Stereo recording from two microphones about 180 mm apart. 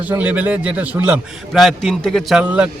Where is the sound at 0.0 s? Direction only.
10° right (ahead or behind).